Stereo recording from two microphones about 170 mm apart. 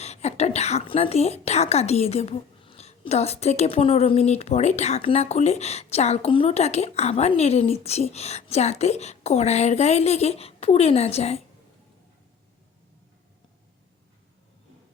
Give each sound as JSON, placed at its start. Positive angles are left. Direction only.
{"t": 0.0, "sound": "a woman's voice", "side_deg": 40}